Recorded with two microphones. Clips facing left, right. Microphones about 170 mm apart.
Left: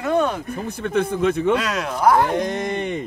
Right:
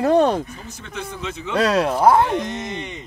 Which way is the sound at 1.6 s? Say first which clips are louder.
Right 6 dB; 35° right (ahead or behind).